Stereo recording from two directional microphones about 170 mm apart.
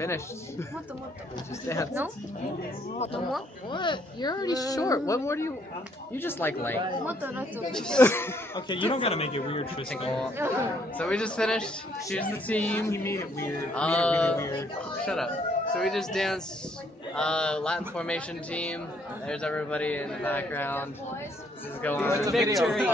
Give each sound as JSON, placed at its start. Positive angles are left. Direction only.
{"t": 0.0, "sound": "a man's voice", "side_deg": 15}
{"t": 1.7, "sound": "a man's voice", "side_deg": 15}
{"t": 3.7, "sound": "a man's voice", "side_deg": 25}
{"t": 7.1, "sound": "speech", "side_deg": -10}
{"t": 7.7, "sound": "a man's voice", "side_deg": 5}
{"t": 8.5, "sound": "speech", "side_deg": 30}
{"t": 10.3, "sound": "speech", "side_deg": -15}
{"t": 11.0, "sound": "a man's voice", "side_deg": 5}
{"t": 21.8, "sound": "a man's voice", "side_deg": 15}
{"t": 22.6, "sound": "speech", "side_deg": 0}